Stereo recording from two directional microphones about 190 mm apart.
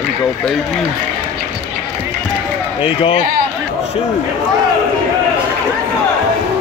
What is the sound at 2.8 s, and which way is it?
Speech, 30° left (ahead or behind).